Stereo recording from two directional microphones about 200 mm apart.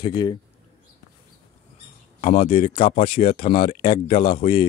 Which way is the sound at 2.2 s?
30° left (ahead or behind).